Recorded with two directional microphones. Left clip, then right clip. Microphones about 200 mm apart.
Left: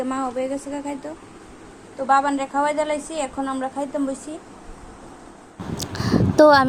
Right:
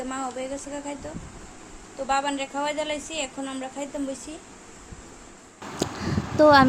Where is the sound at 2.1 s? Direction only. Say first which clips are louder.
Left 7 dB; 15° left (ahead or behind).